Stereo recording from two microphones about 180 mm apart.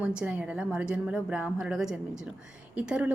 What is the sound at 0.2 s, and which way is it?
A woman's voice, 5° right (ahead or behind).